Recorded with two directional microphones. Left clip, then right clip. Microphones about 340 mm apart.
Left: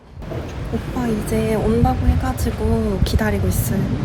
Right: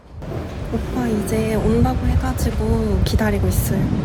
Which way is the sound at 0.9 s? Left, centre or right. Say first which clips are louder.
Even; centre.